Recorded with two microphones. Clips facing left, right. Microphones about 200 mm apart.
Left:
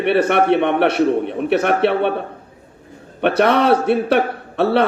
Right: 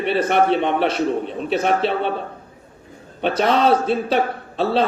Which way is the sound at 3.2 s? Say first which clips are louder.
Left 3 dB; 65° left (ahead or behind).